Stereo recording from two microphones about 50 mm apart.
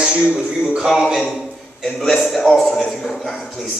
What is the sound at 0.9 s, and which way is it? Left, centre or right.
A man's voice, centre.